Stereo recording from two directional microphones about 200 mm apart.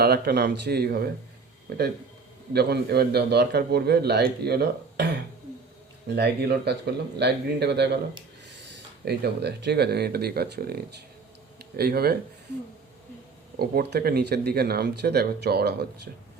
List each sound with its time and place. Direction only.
0.0 s a man's voice: 55° right (ahead or behind)
6.1 s a man's voice: 55° right (ahead or behind)
13.6 s a man's voice: 55° right (ahead or behind)